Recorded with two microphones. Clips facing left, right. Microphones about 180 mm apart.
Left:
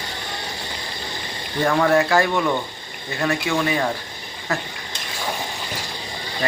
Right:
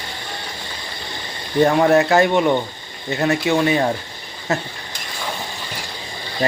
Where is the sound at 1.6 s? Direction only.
25° right (ahead or behind).